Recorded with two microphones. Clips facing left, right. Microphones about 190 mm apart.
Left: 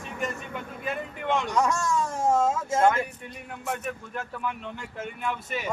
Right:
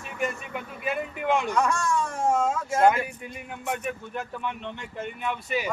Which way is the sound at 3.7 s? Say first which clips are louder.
Right 2 dB; 5° right (ahead or behind).